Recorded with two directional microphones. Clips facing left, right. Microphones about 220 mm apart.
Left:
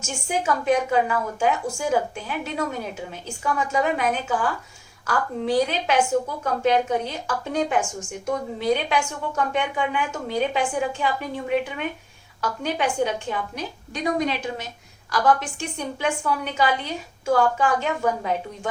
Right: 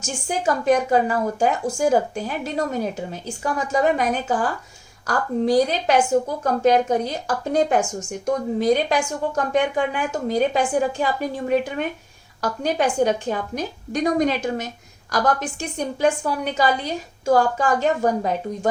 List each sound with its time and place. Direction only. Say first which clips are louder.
0.0 s a woman's voice: right 3 dB; 40° right (ahead or behind)